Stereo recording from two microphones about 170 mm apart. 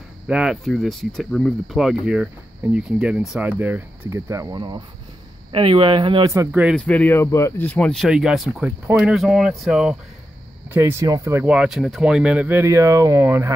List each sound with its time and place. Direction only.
0.3 s speech: 5° right (ahead or behind); by 6.3 s 30° right (ahead or behind)
6.3 s speech: 20° right (ahead or behind)
6.7 s speech: 5° left (ahead or behind)
10.7 s speech: 15° right (ahead or behind)